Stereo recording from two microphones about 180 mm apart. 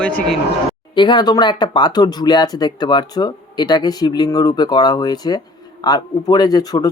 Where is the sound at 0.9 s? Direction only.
25° left (ahead or behind).